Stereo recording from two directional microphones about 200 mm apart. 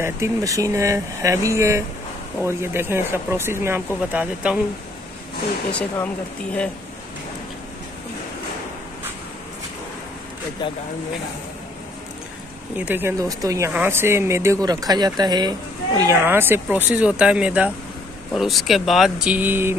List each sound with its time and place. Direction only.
0.0 s speech: 15° right (ahead or behind)
5.7 s speech: 5° left (ahead or behind)
10.6 s speech: 25° left (ahead or behind)
12.7 s speech: 10° right (ahead or behind)